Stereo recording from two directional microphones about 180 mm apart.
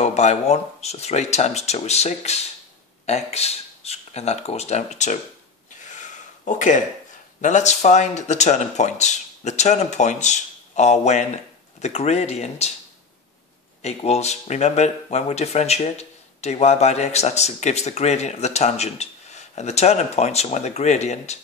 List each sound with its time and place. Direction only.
0.0 s speech: 40° left (ahead or behind)
5.8 s gasp: 45° left (ahead or behind)
7.4 s speech: 40° left (ahead or behind)
13.8 s speech: 35° left (ahead or behind)